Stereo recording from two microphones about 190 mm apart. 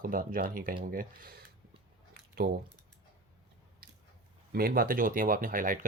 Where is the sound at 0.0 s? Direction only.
45° right (ahead or behind).